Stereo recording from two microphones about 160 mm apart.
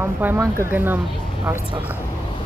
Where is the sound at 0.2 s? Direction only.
10° right (ahead or behind).